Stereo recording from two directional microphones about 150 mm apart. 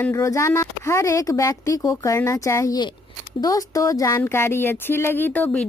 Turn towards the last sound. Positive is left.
turn(degrees=10)  # may be behind; listen again after turning